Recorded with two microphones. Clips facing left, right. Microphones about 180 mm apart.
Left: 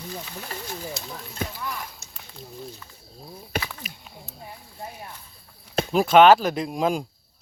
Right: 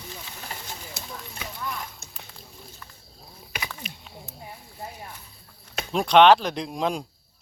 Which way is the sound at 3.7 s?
5° left (ahead or behind).